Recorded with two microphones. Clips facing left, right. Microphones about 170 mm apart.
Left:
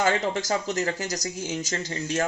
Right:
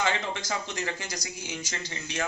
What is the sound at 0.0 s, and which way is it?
Speech, 45° left (ahead or behind).